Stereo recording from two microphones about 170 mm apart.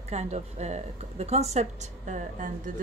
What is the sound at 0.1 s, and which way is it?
Speech, 40° right (ahead or behind).